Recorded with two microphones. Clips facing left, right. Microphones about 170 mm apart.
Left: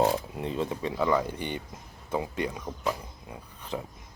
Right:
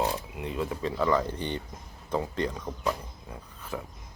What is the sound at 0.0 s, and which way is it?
Speech, 35° left (ahead or behind).